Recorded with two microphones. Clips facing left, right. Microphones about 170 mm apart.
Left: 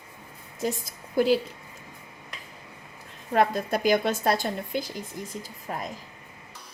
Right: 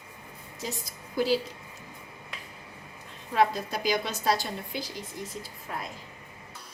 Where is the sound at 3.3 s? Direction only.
55° left (ahead or behind).